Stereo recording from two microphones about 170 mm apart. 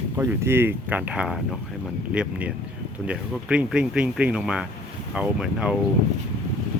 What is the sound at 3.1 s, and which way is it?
Speech, 5° right (ahead or behind).